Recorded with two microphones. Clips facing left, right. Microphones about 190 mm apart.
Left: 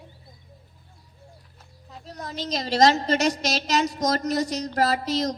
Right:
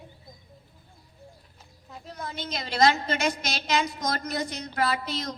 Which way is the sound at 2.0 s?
40° left (ahead or behind).